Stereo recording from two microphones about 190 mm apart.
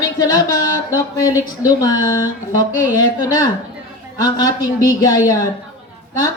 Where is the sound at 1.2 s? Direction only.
20° left (ahead or behind).